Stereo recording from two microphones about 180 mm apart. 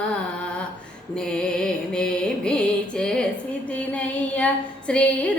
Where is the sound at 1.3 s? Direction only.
5° left (ahead or behind).